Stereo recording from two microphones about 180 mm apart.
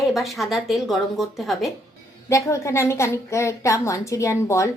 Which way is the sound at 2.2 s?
15° left (ahead or behind).